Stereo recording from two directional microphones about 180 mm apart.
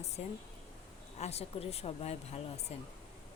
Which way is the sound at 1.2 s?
35° left (ahead or behind).